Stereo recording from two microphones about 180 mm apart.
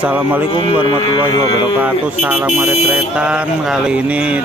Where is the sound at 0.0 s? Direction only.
10° right (ahead or behind).